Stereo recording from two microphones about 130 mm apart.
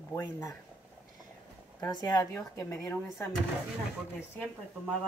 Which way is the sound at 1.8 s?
30° left (ahead or behind).